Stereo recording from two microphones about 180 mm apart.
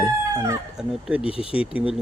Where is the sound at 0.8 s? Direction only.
5° right (ahead or behind).